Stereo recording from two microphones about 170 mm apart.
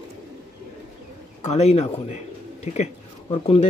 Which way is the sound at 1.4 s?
40° left (ahead or behind).